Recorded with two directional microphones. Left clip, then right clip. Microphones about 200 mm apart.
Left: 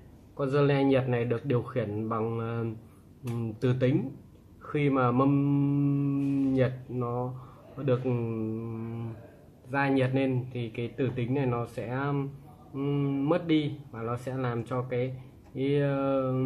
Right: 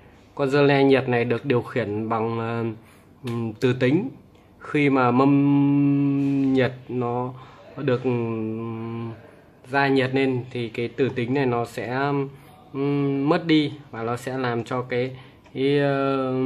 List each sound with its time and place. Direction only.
0.4 s speech: 40° right (ahead or behind)
4.6 s mantra: 40° right (ahead or behind)
7.8 s speech: 40° right (ahead or behind)